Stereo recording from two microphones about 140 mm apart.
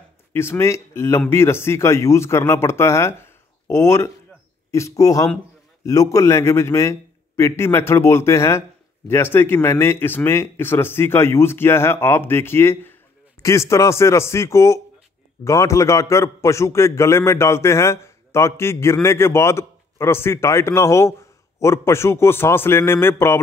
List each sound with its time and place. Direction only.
0.3 s a man's voice: 15° left (ahead or behind)